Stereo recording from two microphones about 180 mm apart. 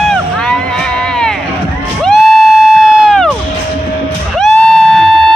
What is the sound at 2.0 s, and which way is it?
Music, centre (ahead or behind).